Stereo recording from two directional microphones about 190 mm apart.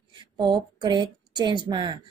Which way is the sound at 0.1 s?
25° right (ahead or behind).